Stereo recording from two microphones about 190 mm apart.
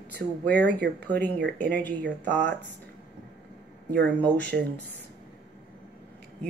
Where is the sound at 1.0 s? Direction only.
10° left (ahead or behind).